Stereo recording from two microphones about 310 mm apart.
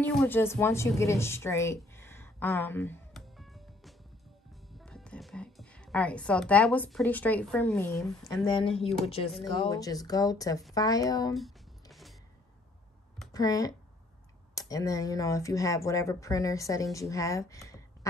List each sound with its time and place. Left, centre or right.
0.0 s a woman's voice: centre
8.5 s speech: centre
11.3 s music: centre
13.3 s speech: centre